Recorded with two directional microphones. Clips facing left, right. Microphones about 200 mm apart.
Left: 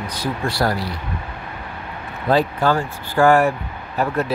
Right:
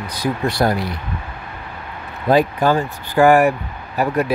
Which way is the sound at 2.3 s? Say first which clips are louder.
Right 2 dB; 15° right (ahead or behind).